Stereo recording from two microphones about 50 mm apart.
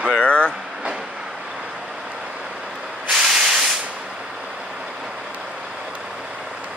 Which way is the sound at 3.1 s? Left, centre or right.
Centre.